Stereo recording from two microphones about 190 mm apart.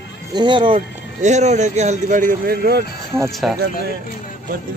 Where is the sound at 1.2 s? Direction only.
40° right (ahead or behind); by 2.8 s 55° right (ahead or behind).